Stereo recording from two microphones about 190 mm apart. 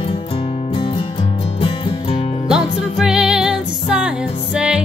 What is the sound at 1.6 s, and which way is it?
Music, 30° left (ahead or behind).